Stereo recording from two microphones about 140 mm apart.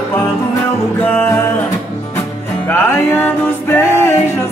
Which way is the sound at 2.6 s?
15° left (ahead or behind).